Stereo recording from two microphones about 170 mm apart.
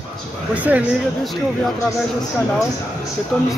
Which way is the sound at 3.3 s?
5° left (ahead or behind).